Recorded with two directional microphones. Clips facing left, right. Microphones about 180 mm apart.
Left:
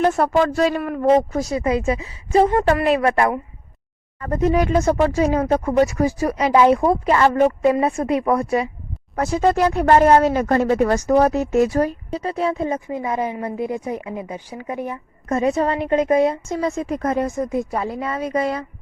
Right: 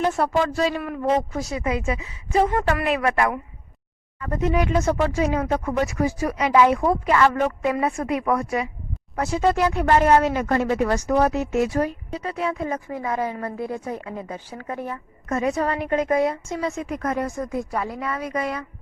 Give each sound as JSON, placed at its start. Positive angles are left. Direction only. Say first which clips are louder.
{"t": 0.0, "sound": "speech", "louder": "left 4 dB", "side_deg": 50}
{"t": 15.3, "sound": "a woman's voice", "louder": "left 4 dB", "side_deg": 25}
{"t": 16.5, "sound": "a woman's voice", "louder": "left 4 dB", "side_deg": 35}